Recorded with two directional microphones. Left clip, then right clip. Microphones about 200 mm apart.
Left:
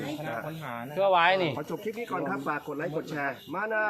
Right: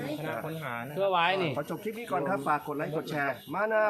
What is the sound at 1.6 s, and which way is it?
Speech, 25° right (ahead or behind).